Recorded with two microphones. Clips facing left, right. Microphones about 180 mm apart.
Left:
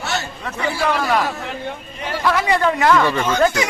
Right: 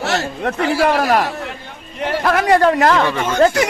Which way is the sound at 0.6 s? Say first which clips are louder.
Right 4 dB; 75° right (ahead or behind).